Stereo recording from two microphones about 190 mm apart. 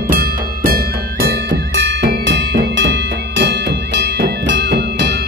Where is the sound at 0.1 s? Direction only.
50° right (ahead or behind).